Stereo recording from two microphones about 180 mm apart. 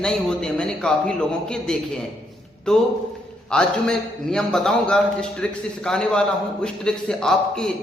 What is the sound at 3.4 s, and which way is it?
A man's voice, 5° left (ahead or behind).